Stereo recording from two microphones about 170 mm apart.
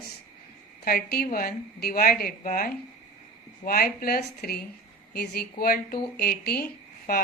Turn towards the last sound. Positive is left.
turn(degrees=60)  # may be behind; listen again after turning